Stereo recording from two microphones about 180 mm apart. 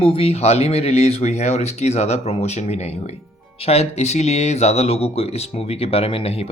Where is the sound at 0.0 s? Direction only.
35° left (ahead or behind).